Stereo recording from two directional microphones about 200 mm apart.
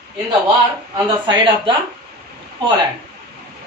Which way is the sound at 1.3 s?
25° right (ahead or behind).